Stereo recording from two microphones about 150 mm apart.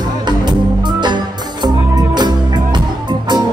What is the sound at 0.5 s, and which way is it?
Music, 30° right (ahead or behind).